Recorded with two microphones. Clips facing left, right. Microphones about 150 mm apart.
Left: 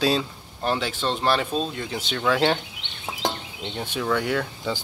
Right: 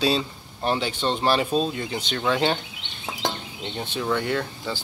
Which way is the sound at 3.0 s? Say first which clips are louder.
Left 1 dB; 5° left (ahead or behind).